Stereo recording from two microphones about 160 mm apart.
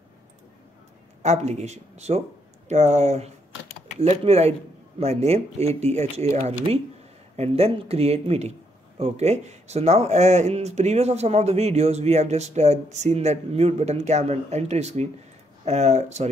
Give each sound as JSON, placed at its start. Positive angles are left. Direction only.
{"t": 1.2, "sound": "speech", "side_deg": -45}